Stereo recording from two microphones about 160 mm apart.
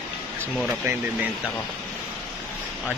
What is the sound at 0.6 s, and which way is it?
Speech, 10° right (ahead or behind).